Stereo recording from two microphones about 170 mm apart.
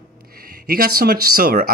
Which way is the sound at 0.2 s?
60° right (ahead or behind).